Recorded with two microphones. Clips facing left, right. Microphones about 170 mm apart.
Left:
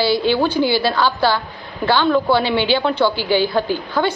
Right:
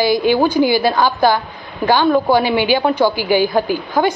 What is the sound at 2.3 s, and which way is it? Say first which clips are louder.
A woman's voice: right 2 dB; 10° right (ahead or behind).